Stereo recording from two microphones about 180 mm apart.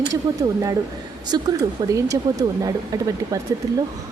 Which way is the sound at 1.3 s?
20° right (ahead or behind).